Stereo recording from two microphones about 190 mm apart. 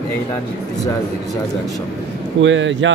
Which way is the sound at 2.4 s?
80° right.